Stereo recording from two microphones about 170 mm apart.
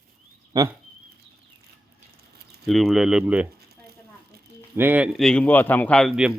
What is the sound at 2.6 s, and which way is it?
Speech, centre (ahead or behind).